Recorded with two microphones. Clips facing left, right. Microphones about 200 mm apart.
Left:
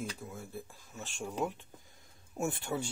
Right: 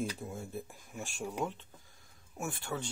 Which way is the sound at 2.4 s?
20° left (ahead or behind).